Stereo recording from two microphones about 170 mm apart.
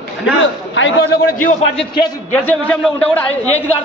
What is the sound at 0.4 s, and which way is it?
Speech, 90° left.